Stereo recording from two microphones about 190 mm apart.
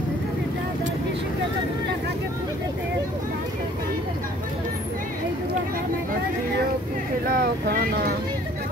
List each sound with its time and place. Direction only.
7.2 s boat: 55° right (ahead or behind)